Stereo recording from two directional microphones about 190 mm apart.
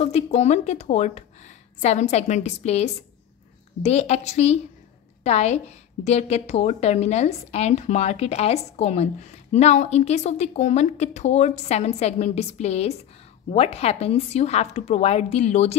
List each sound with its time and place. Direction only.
0.0 s a woman's voice: 35° left (ahead or behind)